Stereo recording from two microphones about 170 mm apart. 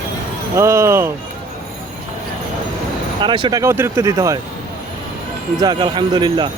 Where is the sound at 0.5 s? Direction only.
15° right (ahead or behind).